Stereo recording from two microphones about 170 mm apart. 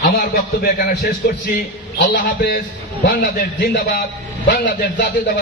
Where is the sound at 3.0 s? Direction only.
75° left (ahead or behind).